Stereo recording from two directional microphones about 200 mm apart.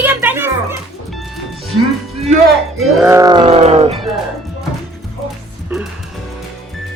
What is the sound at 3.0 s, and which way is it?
Music, 15° right (ahead or behind).